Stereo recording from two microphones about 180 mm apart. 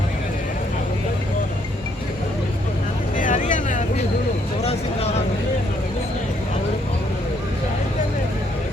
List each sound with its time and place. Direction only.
3.2 s vehicle: 45° left (ahead or behind)